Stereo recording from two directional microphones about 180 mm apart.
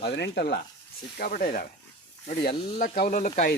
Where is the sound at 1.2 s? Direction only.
55° left (ahead or behind).